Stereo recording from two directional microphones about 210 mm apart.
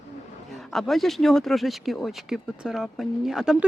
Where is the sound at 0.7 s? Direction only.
Centre (ahead or behind).